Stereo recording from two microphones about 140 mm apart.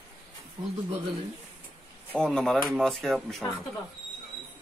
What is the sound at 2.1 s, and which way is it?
Speech, 5° left (ahead or behind).